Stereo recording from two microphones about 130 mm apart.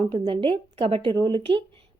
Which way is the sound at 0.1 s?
40° right (ahead or behind).